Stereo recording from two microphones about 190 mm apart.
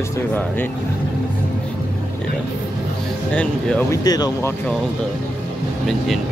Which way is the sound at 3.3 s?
5° left (ahead or behind).